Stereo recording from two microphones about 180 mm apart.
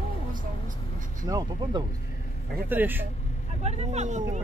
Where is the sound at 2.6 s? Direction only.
10° right (ahead or behind).